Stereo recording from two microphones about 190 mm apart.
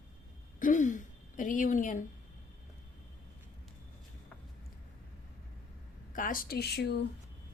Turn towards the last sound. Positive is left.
turn(degrees=60)  # may be behind; listen again after turning